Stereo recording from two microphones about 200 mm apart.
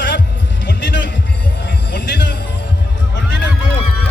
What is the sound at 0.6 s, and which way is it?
Music, 60° left (ahead or behind).